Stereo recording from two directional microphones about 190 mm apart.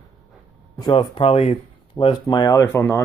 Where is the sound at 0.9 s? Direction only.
25° left (ahead or behind).